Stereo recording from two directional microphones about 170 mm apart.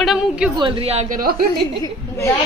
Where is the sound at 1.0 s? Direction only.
55° right (ahead or behind).